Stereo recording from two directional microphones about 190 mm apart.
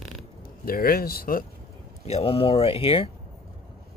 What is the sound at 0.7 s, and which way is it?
Speech, 55° left (ahead or behind).